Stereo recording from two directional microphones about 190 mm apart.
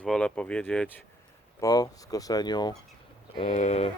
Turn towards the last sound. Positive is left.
turn(degrees=35)  # may be behind; listen again after turning